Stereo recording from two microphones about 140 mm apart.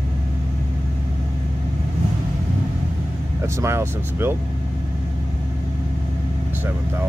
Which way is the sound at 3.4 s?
20° right (ahead or behind).